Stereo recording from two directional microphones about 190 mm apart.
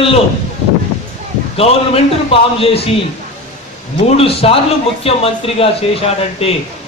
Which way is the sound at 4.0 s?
30° left (ahead or behind).